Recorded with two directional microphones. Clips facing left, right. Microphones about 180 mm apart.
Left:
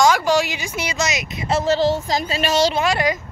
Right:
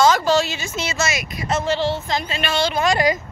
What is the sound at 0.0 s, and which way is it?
Speech, 15° left (ahead or behind).